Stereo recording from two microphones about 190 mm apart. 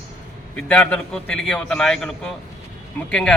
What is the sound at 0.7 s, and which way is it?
A man's voice, 5° left (ahead or behind).